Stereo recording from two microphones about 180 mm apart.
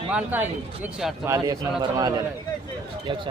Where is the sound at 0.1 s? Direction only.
10° right (ahead or behind).